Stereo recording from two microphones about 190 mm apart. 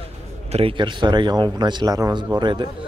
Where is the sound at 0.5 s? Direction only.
30° right (ahead or behind).